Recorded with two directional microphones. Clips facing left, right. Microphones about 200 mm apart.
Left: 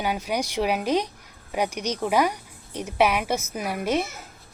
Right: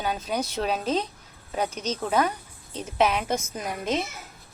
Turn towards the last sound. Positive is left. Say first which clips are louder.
# left 3 dB
turn(degrees=10)  # may be behind; listen again after turning